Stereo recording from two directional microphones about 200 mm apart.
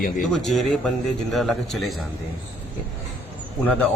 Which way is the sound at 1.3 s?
Centre (ahead or behind).